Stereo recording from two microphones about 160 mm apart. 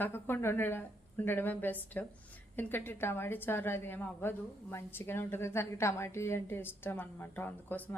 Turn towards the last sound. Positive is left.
turn(degrees=10)  # may be behind; listen again after turning